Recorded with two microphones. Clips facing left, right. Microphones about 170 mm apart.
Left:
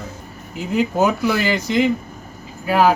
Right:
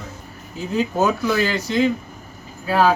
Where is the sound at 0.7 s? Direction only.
15° left (ahead or behind).